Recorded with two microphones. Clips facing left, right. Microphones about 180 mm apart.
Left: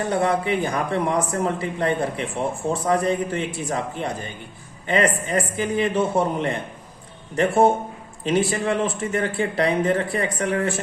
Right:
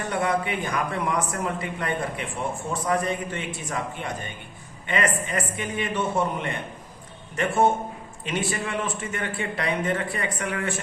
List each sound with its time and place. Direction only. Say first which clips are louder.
0.1 s speech: left 3 dB; 30° left (ahead or behind)